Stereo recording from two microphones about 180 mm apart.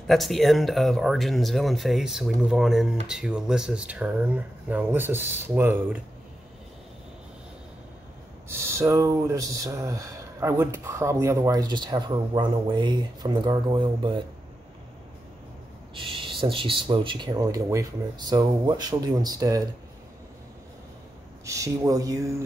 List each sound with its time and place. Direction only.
0.0 s speech: centre (ahead or behind)
8.5 s speech: 15° right (ahead or behind)
15.9 s speech: 30° right (ahead or behind)
21.5 s speech: 20° right (ahead or behind)